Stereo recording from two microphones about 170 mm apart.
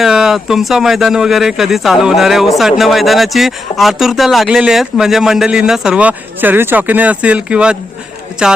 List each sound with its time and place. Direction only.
0.0 s speech: centre (ahead or behind)